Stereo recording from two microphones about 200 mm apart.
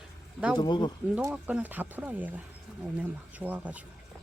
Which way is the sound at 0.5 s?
20° left (ahead or behind).